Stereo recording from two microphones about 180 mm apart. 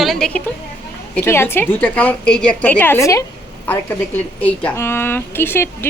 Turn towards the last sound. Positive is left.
turn(degrees=10)  # may be behind; listen again after turning